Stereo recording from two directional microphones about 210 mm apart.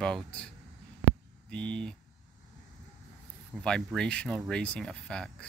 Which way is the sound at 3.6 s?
5° left (ahead or behind).